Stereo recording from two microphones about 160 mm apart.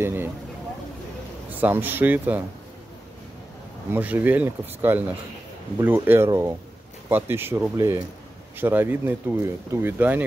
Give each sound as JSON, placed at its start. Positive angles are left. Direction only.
{"t": 0.0, "sound": "speech", "side_deg": -15}
{"t": 1.6, "sound": "speech", "side_deg": -10}
{"t": 3.9, "sound": "speech", "side_deg": -10}